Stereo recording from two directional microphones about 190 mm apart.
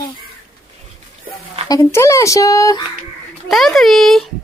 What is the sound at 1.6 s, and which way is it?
Speech, 20° left (ahead or behind).